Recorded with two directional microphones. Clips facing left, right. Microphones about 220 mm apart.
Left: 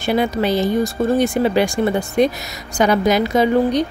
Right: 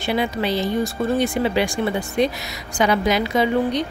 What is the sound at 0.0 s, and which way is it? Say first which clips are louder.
Speech: left 4 dB; 45° left (ahead or behind).